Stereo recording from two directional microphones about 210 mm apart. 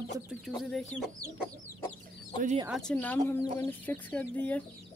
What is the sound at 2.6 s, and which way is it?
Speech, centre (ahead or behind).